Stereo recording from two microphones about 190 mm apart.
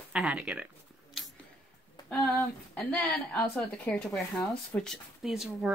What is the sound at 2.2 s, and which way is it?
Speech, centre (ahead or behind).